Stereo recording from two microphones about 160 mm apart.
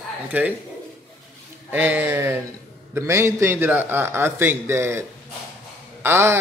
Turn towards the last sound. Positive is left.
turn(degrees=-15)  # may be behind; listen again after turning